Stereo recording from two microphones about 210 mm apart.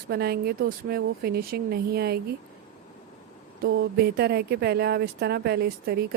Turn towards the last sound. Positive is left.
turn(degrees=-50)  # may be behind; listen again after turning